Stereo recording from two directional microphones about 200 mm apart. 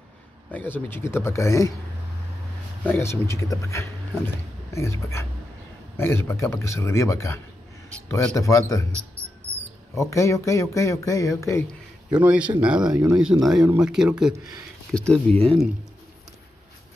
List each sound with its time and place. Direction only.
0.5 s speech: 10° left (ahead or behind)
2.8 s speech: 10° left (ahead or behind)
9.9 s speech: 15° left (ahead or behind)
12.1 s speech: 5° right (ahead or behind)